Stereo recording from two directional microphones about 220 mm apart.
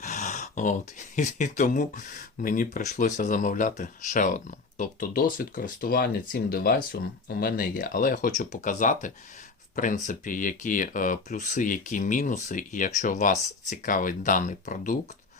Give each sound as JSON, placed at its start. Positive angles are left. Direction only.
{"t": 0.0, "sound": "speech", "side_deg": 35}